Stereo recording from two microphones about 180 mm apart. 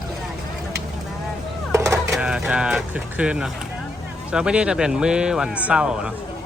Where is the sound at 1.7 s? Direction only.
15° right (ahead or behind).